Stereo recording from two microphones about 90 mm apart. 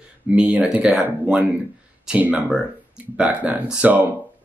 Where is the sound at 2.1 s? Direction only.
15° right (ahead or behind).